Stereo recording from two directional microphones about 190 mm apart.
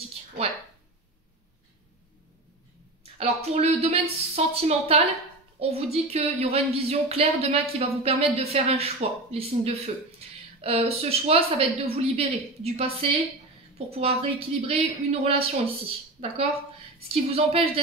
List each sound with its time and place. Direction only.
3.0 s speech: 30° right (ahead or behind)
10.2 s a sound: 30° right (ahead or behind)
10.6 s speech: 30° right (ahead or behind)
17.1 s speech: 30° right (ahead or behind)